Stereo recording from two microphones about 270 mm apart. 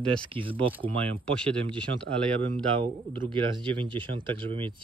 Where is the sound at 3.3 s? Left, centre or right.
Centre.